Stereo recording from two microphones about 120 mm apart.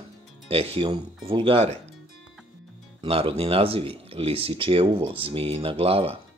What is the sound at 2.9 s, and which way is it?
Speech, 50° right (ahead or behind).